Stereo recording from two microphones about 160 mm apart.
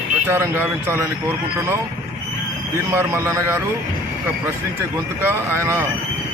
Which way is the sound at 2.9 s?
15° right (ahead or behind).